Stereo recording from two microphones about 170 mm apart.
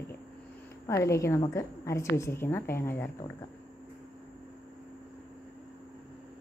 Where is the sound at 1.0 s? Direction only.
15° left (ahead or behind).